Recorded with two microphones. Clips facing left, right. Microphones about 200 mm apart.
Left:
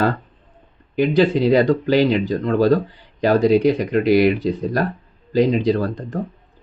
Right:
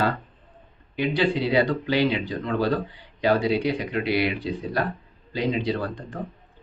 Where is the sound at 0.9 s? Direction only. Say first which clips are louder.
Left 7 dB; 45° left (ahead or behind).